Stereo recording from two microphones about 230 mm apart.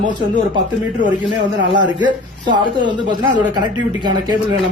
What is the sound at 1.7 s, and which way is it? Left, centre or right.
Speech, centre.